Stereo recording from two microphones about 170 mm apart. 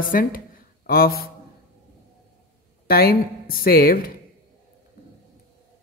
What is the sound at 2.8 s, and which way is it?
A man's voice, 60° left (ahead or behind).